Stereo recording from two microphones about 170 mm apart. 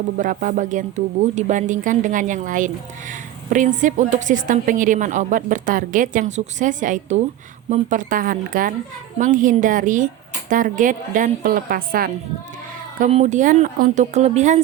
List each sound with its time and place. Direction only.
0.2 s a woman's voice: 50° right (ahead or behind)
13.0 s a woman's voice: 40° right (ahead or behind)